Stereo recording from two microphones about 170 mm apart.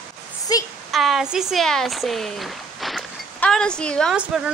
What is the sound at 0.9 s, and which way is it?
A woman's voice, centre (ahead or behind).